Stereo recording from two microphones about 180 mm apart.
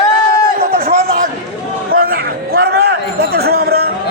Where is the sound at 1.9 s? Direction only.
55° right (ahead or behind).